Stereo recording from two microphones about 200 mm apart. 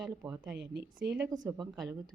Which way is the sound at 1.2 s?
15° right (ahead or behind).